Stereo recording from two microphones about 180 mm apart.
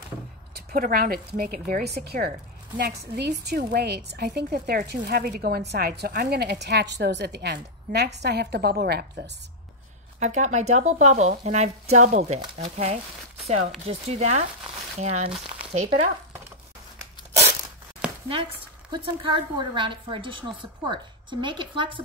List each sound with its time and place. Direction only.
0.7 s a woman's voice: 55° right (ahead or behind)
10.1 s speech: 40° right (ahead or behind)
18.3 s a woman's voice: 25° right (ahead or behind)